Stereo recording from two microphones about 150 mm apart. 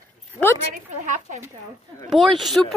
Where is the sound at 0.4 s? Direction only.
10° left (ahead or behind).